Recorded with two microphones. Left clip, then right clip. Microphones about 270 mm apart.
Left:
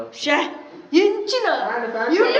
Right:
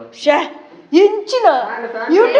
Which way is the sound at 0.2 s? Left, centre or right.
Centre.